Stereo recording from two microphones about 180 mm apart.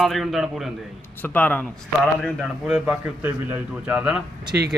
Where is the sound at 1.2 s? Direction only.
10° left (ahead or behind).